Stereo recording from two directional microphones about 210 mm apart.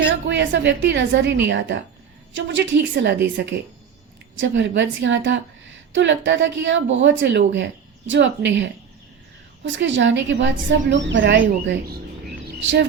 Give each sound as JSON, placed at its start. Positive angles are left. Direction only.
{"t": 0.1, "sound": "a woman's voice", "side_deg": -60}
{"t": 4.4, "sound": "a woman's voice", "side_deg": -60}
{"t": 12.5, "sound": "bird", "side_deg": -55}